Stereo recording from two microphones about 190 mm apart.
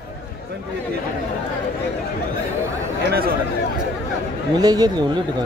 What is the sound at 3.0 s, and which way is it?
Speech, 55° right (ahead or behind).